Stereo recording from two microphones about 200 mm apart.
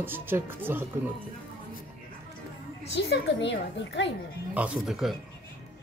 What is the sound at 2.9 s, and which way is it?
A woman's voice, 60° left (ahead or behind).